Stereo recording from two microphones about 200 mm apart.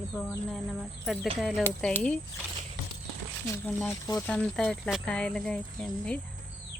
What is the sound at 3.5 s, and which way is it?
Speech, 10° left (ahead or behind).